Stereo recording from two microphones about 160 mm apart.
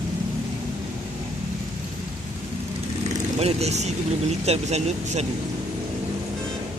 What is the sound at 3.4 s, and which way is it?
Speech, 40° right (ahead or behind).